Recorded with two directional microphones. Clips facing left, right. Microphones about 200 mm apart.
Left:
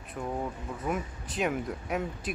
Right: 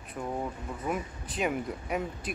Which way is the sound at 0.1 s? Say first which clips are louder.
Even; 5° right (ahead or behind).